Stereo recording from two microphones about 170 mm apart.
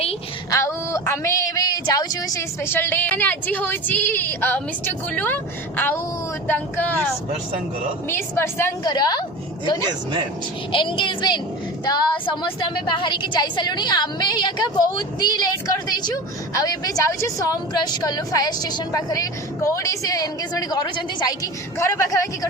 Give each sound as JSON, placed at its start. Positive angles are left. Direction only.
{"t": 0.5, "sound": "speech", "side_deg": 15}
{"t": 8.0, "sound": "speech", "side_deg": 15}
{"t": 8.8, "sound": "a woman's voice", "side_deg": 25}
{"t": 10.7, "sound": "a woman's voice", "side_deg": 30}